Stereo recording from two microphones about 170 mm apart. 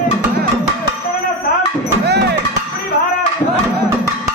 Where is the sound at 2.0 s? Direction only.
75° right (ahead or behind).